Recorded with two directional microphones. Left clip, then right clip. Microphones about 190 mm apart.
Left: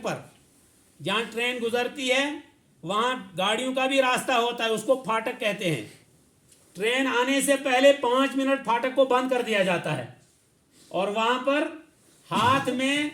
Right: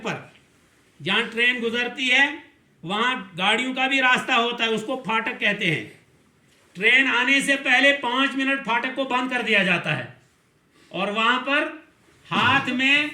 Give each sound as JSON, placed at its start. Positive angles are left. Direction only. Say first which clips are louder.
{"t": 1.0, "sound": "a man's voice", "louder": "right 6 dB", "side_deg": 25}